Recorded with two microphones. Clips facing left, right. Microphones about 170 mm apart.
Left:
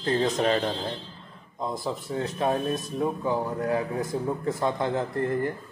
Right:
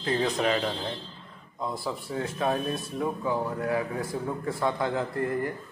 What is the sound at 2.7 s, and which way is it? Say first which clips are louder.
Speech: left 3 dB; 40° left (ahead or behind).